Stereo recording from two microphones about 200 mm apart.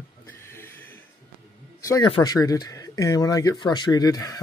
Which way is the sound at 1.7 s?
15° left (ahead or behind).